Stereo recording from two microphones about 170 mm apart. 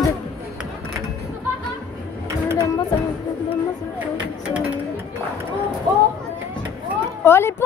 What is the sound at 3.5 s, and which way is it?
Speech, 10° right (ahead or behind).